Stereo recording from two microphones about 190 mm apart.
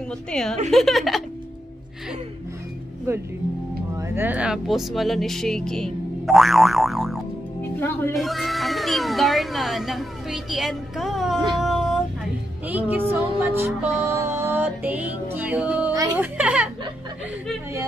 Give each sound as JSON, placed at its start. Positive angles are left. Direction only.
{"t": 0.3, "sound": "speech", "side_deg": 5}
{"t": 3.1, "sound": "music", "side_deg": -15}
{"t": 4.0, "sound": "speech", "side_deg": -10}
{"t": 12.9, "sound": "music", "side_deg": -10}
{"t": 15.9, "sound": "speech", "side_deg": -15}
{"t": 16.3, "sound": "music", "side_deg": -5}